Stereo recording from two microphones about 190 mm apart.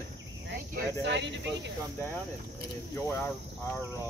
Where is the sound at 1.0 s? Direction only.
70° right (ahead or behind).